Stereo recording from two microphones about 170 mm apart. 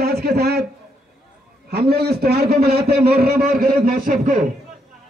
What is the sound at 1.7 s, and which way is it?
A man's voice, 70° right (ahead or behind).